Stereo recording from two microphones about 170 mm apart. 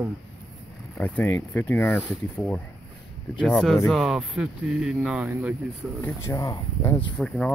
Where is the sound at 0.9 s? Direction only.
10° left (ahead or behind); by 5.6 s 10° right (ahead or behind).